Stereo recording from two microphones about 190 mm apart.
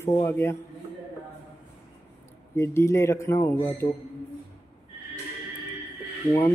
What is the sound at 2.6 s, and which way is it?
Speech, 15° left (ahead or behind).